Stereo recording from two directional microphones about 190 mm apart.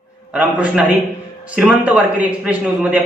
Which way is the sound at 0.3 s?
5° right (ahead or behind).